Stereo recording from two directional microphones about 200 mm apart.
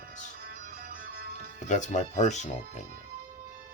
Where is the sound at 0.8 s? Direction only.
45° right (ahead or behind).